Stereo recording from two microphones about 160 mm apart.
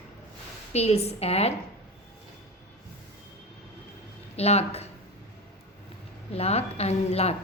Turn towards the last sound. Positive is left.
turn(degrees=40)  # may be behind; listen again after turning